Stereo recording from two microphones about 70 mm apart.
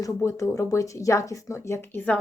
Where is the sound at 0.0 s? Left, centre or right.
Left.